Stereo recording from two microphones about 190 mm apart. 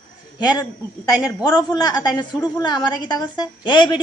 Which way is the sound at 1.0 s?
20° left (ahead or behind).